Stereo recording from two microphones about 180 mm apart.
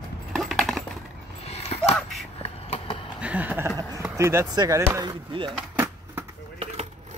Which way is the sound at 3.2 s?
10° right (ahead or behind).